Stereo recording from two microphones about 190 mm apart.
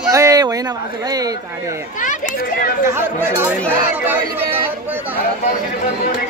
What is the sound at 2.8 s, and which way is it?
Speech, 10° right (ahead or behind).